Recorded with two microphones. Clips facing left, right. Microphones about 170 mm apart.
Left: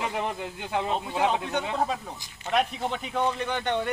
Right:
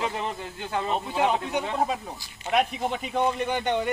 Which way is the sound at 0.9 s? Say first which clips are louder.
Right 3 dB; 5° right (ahead or behind).